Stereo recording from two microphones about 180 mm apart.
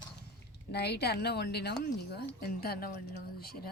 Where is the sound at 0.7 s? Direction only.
65° left (ahead or behind).